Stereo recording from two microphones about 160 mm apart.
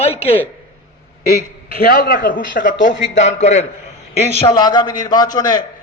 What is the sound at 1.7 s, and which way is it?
A man's voice, 70° left (ahead or behind).